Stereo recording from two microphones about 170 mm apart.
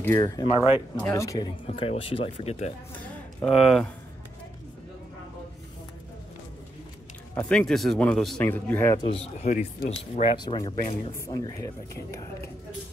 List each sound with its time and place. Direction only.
0.0 s speech: 15° left (ahead or behind)
0.6 s speech: 15° right (ahead or behind)
1.1 s speech: 20° left (ahead or behind)
1.7 s speech: 35° left (ahead or behind)
3.4 s speech: centre (ahead or behind)
7.3 s speech: 5° left (ahead or behind)
8.9 s speech: 30° left (ahead or behind)
10.4 s speech: 25° left (ahead or behind)
11.1 s speech: 20° left (ahead or behind)